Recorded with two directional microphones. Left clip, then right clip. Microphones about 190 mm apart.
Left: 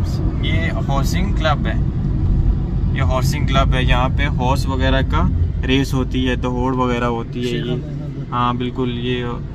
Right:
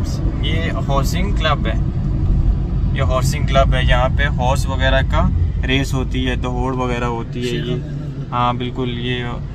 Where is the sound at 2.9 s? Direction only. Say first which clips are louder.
Right 1 dB; centre (ahead or behind).